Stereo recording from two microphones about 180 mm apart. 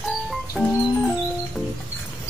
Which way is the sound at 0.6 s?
10° right (ahead or behind).